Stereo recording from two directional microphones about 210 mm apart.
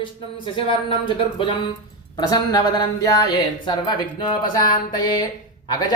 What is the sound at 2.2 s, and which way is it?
Speech, 20° left (ahead or behind).